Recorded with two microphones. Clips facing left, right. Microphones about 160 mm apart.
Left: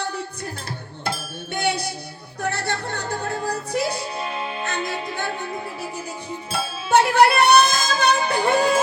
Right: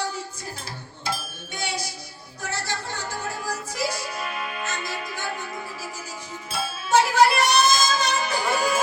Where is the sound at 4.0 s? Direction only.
30° left (ahead or behind).